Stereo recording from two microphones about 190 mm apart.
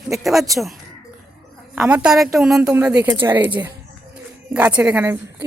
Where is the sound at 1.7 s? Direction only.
5° right (ahead or behind).